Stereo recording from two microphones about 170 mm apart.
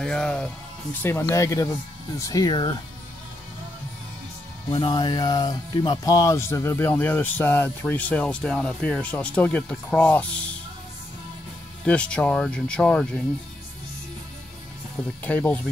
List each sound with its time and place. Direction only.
0.0 s speech: 5° left (ahead or behind)
1.0 s speech: 15° left (ahead or behind)
4.6 s speech: 30° left (ahead or behind); by 10.4 s 10° left (ahead or behind)
11.8 s speech: 5° left (ahead or behind)
15.2 s speech: 10° left (ahead or behind)